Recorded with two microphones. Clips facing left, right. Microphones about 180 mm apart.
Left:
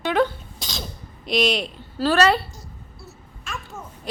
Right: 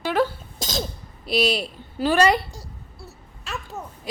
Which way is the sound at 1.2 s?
5° right (ahead or behind).